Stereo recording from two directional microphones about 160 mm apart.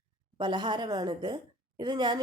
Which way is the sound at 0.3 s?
30° right (ahead or behind).